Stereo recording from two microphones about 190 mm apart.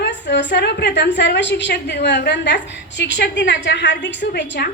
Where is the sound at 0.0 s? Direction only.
65° left (ahead or behind).